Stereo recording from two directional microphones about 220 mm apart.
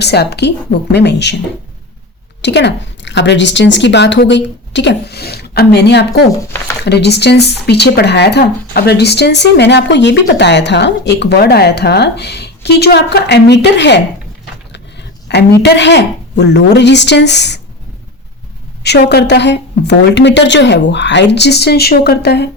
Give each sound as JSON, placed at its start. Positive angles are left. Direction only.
{"t": 0.0, "sound": "speech", "side_deg": 50}
{"t": 2.4, "sound": "speech", "side_deg": 50}
{"t": 15.3, "sound": "speech", "side_deg": 50}
{"t": 18.8, "sound": "speech", "side_deg": 50}